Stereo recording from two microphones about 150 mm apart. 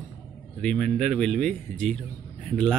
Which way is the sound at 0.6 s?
5° left (ahead or behind).